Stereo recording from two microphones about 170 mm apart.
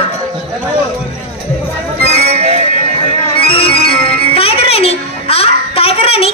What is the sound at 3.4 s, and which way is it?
Music, 35° left (ahead or behind).